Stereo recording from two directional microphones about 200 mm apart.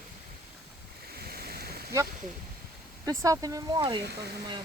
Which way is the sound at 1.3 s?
50° right (ahead or behind).